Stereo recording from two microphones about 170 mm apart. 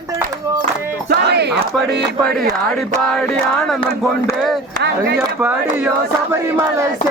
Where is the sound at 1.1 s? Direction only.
70° right (ahead or behind).